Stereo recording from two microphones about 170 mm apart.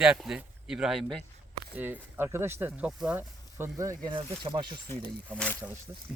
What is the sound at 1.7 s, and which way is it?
Speech, 10° right (ahead or behind).